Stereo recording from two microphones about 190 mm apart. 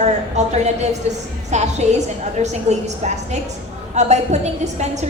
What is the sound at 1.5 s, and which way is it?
A woman's voice, 35° right (ahead or behind).